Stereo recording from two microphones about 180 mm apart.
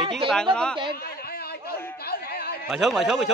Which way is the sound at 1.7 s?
60° left (ahead or behind).